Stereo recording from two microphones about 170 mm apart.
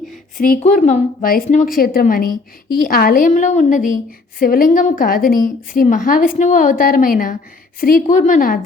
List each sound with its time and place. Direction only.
0.3 s a woman's voice: 60° left (ahead or behind)
0.6 s a woman's voice: 40° left (ahead or behind)
4.4 s a woman's voice: 55° left (ahead or behind)
8.1 s a woman's voice: 45° left (ahead or behind)